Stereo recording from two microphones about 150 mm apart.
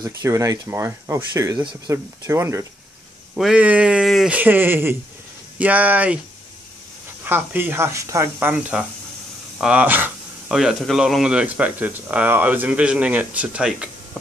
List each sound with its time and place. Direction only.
0.0 s speech: 20° right (ahead or behind)
3.3 s speech: 5° right (ahead or behind)
7.2 s speech: 15° right (ahead or behind)
10.5 s speech: centre (ahead or behind)